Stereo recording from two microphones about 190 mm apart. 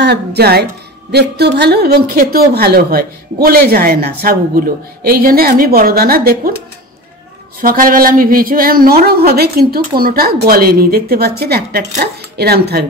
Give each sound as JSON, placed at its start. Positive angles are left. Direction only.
{"t": 0.0, "sound": "a woman's voice", "side_deg": -60}
{"t": 7.6, "sound": "a woman's voice", "side_deg": -45}